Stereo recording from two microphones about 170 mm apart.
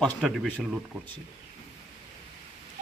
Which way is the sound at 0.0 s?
Centre (ahead or behind).